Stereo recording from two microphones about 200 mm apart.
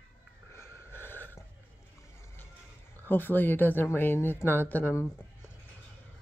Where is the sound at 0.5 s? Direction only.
15° left (ahead or behind).